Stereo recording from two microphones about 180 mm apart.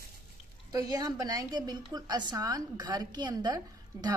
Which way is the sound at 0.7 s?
20° right (ahead or behind).